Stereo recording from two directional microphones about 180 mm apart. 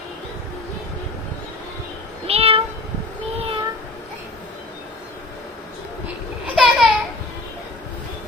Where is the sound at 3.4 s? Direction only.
30° right (ahead or behind).